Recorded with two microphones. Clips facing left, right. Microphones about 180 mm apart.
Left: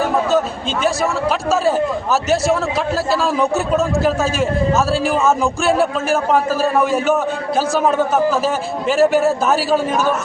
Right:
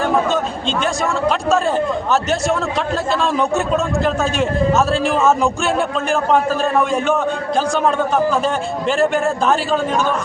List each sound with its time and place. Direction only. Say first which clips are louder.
2.3 s a man's voice: left 2 dB; 5° left (ahead or behind)